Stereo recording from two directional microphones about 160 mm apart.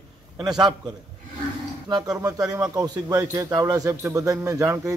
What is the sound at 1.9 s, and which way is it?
Speech, 25° right (ahead or behind).